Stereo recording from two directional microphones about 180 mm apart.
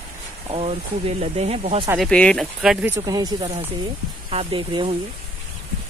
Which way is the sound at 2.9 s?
20° right (ahead or behind).